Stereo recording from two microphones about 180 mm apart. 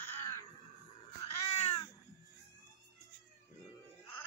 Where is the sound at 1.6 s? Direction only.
35° left (ahead or behind).